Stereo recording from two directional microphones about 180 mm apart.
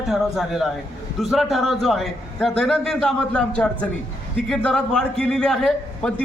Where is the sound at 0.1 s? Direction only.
Centre (ahead or behind).